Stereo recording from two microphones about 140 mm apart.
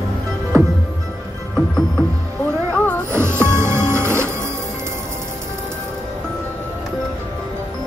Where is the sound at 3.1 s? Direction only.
15° right (ahead or behind).